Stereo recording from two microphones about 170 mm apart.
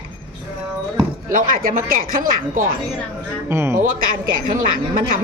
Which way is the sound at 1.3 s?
55° right (ahead or behind).